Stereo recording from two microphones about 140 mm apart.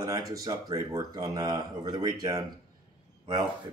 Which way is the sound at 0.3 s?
25° right (ahead or behind).